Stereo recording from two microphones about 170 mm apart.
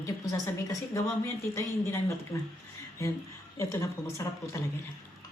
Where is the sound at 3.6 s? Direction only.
15° left (ahead or behind).